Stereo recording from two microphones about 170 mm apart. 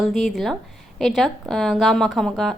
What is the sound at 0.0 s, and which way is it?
A woman's voice, centre (ahead or behind).